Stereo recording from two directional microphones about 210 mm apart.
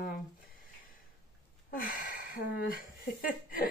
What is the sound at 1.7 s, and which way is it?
Speech, 40° left (ahead or behind).